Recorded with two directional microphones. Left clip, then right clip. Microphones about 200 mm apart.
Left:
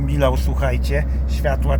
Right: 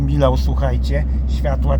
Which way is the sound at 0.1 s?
15° right (ahead or behind).